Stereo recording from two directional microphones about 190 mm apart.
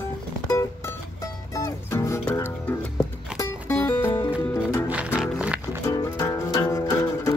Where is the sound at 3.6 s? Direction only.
15° left (ahead or behind).